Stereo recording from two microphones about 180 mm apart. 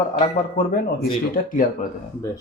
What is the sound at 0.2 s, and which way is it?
Speech, 50° left (ahead or behind).